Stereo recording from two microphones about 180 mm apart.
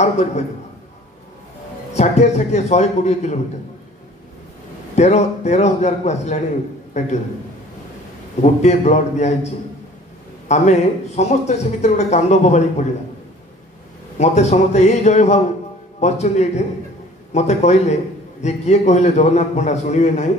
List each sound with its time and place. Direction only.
2.0 s speech: 40° left (ahead or behind)
4.9 s speech: 40° left (ahead or behind)
8.4 s speech: 40° left (ahead or behind)
10.5 s speech: 40° left (ahead or behind)
14.1 s speech: 40° left (ahead or behind)